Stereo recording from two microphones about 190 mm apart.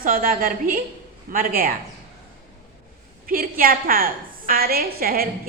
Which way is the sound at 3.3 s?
50° right (ahead or behind).